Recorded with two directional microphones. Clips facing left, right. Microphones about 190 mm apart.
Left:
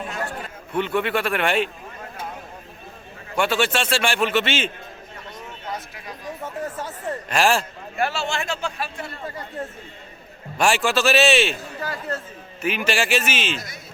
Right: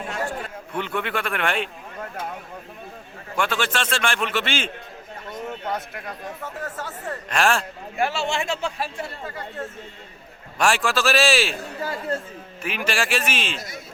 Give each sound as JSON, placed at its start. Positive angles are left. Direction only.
{"t": 0.7, "sound": "a man's voice", "side_deg": 5}
{"t": 3.3, "sound": "a man's voice", "side_deg": 5}
{"t": 5.5, "sound": "a sound", "side_deg": -60}
{"t": 6.4, "sound": "speech", "side_deg": 20}
{"t": 7.3, "sound": "a man's voice", "side_deg": 5}
{"t": 7.9, "sound": "speech", "side_deg": -15}
{"t": 10.6, "sound": "a man's voice", "side_deg": 0}
{"t": 11.8, "sound": "speech", "side_deg": -25}
{"t": 12.6, "sound": "a man's voice", "side_deg": 0}